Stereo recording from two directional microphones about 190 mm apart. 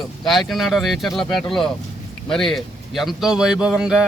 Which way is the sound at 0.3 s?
Centre (ahead or behind).